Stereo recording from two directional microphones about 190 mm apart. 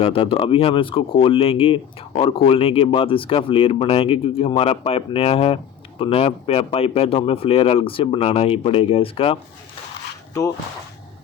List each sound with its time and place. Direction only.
0.0 s speech: 30° left (ahead or behind)